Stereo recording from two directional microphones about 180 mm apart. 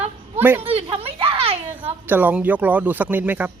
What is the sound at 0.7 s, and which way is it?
Children playing, 30° right (ahead or behind).